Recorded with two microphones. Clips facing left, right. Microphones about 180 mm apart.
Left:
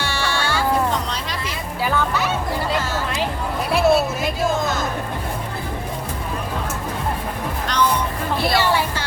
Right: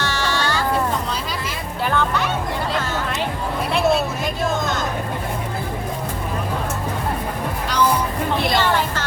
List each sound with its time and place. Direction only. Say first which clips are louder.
0.0 s music: right 1 dB; 10° left (ahead or behind)
1.8 s music: even; 5° left (ahead or behind)
3.7 s music: left 3 dB; 5° left (ahead or behind)
8.5 s a sound: even; 10° left (ahead or behind)